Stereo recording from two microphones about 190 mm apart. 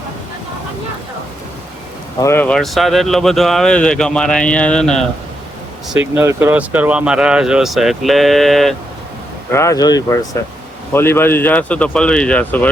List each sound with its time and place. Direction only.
2.2 s speech: 10° left (ahead or behind)
5.9 s speech: 10° right (ahead or behind)
9.5 s speech: 15° left (ahead or behind)